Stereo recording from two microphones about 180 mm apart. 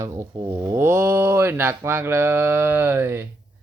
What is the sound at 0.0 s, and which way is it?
Mantra, 15° right (ahead or behind).